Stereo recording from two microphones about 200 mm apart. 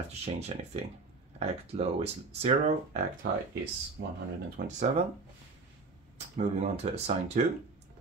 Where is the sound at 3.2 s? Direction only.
55° right (ahead or behind).